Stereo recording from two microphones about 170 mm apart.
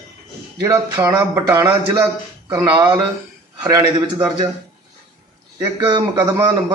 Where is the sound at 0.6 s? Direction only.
20° right (ahead or behind).